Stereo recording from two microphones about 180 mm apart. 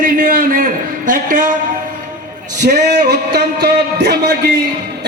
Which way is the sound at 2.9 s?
65° right (ahead or behind).